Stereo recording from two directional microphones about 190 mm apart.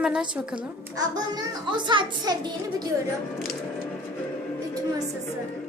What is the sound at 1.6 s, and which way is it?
A woman's voice, 25° right (ahead or behind).